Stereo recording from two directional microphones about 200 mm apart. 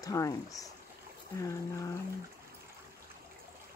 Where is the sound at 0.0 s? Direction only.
15° left (ahead or behind).